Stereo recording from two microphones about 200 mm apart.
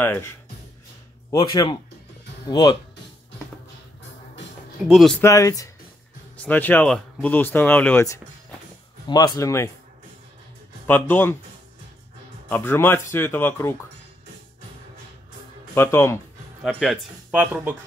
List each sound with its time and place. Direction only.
0.0 s speech: 10° left (ahead or behind)
1.3 s speech: 20° left (ahead or behind)
4.8 s speech: centre (ahead or behind)
5.2 s speech: 15° left (ahead or behind)
10.9 s speech: 10° left (ahead or behind)
12.4 s speech: 10° left (ahead or behind)
15.7 s speech: 10° left (ahead or behind)
16.6 s speech: centre (ahead or behind)